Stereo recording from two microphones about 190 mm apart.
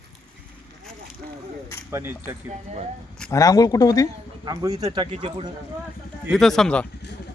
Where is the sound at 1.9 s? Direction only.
15° right (ahead or behind).